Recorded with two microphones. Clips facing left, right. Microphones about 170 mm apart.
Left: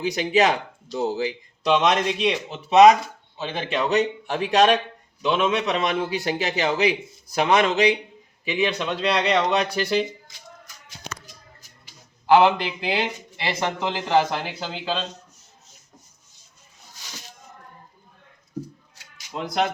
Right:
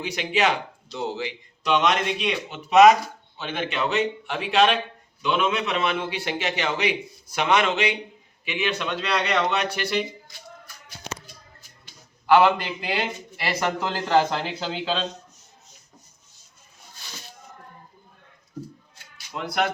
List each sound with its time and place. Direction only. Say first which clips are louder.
0.0 s speech: left 4 dB; 40° left (ahead or behind)
12.4 s a man's voice: left 1 dB; 20° left (ahead or behind); by 15.0 s 5° left (ahead or behind)
19.3 s speech: left 1 dB; 25° left (ahead or behind)